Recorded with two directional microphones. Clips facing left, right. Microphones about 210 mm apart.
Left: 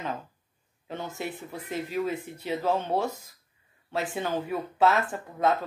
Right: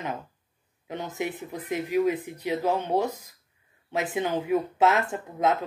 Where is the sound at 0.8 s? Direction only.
15° right (ahead or behind).